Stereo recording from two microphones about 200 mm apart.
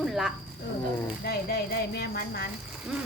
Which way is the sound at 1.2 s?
50° left (ahead or behind).